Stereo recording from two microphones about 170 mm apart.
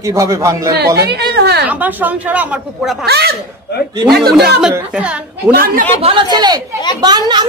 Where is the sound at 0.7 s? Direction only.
70° right (ahead or behind).